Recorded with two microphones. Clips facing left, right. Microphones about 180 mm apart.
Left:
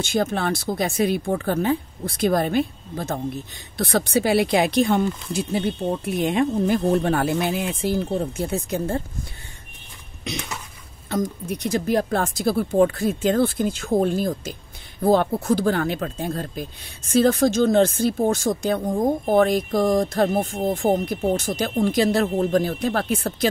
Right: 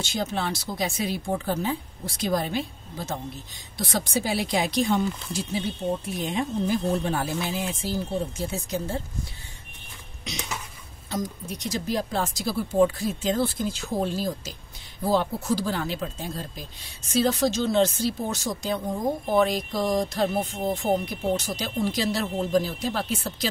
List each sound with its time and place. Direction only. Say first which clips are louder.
0.0 s speech: left 6 dB; 55° left (ahead or behind)
10.3 s speech: left 4 dB; 55° left (ahead or behind)